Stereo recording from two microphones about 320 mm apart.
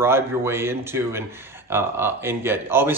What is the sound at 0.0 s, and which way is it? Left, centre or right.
A man's voice, centre.